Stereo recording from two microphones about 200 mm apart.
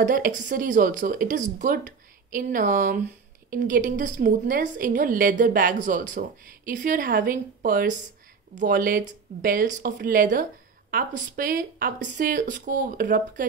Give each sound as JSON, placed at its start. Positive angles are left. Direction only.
{"t": 0.0, "sound": "a woman's voice", "side_deg": -40}